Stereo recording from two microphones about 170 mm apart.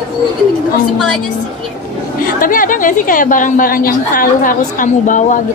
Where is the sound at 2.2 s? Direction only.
55° left (ahead or behind).